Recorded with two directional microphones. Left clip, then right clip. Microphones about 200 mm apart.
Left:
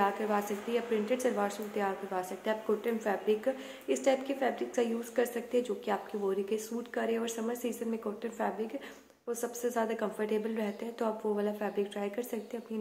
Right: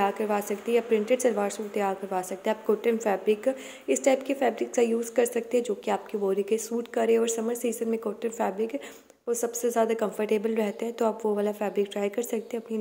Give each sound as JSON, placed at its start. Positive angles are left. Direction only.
{"t": 0.0, "sound": "a woman's voice", "side_deg": -30}